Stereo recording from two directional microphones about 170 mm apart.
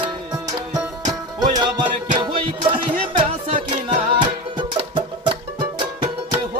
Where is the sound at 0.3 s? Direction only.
20° right (ahead or behind).